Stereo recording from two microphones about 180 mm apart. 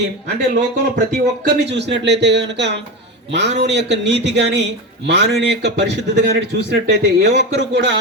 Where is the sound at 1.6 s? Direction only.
75° right (ahead or behind).